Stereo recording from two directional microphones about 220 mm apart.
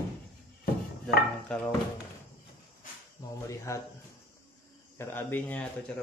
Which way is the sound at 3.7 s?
15° left (ahead or behind).